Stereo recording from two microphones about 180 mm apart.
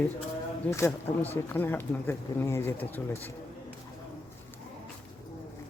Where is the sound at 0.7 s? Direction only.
15° left (ahead or behind).